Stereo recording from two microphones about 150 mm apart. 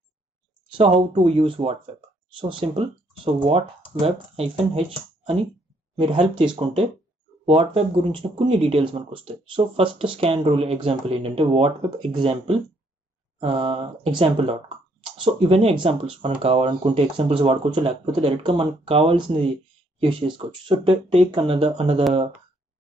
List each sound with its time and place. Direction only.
1.1 s speech: 40° right (ahead or behind)
6.5 s speech: 35° right (ahead or behind)